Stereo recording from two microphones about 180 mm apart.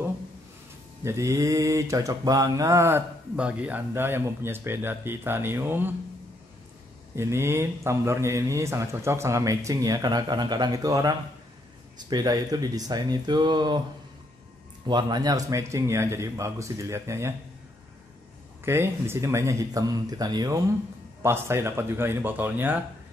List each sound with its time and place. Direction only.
1.0 s mantra: 15° right (ahead or behind)
7.2 s mantra: 15° right (ahead or behind)
12.1 s speech: 20° right (ahead or behind)
14.9 s mantra: 25° right (ahead or behind)
18.6 s speech: 15° right (ahead or behind)
21.2 s mantra: 15° right (ahead or behind)